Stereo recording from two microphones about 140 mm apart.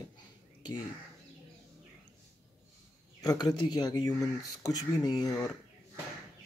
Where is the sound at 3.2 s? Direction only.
30° left (ahead or behind).